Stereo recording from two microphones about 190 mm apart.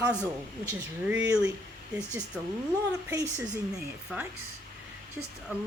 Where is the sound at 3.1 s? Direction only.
15° right (ahead or behind).